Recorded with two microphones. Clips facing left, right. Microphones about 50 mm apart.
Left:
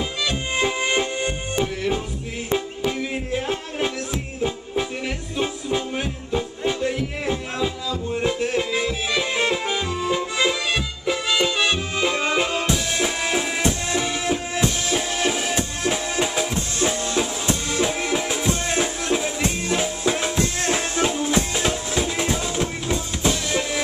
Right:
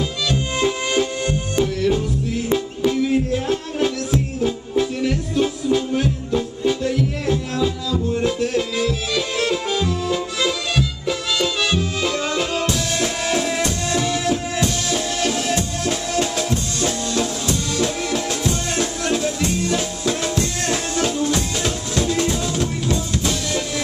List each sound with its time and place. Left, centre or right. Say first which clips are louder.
0.6 s music: right 1 dB; centre